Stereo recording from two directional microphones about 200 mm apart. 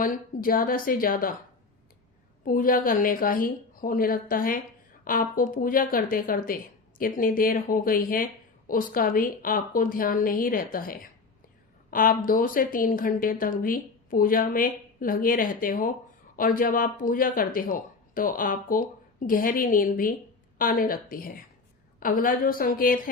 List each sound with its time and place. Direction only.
0.0 s speech: 45° left (ahead or behind)
2.4 s speech: 45° left (ahead or behind)